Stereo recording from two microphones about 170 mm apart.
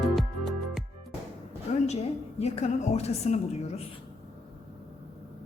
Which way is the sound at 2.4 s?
40° left (ahead or behind).